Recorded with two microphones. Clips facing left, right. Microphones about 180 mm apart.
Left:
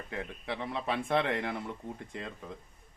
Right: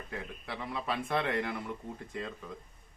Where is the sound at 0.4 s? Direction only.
20° left (ahead or behind).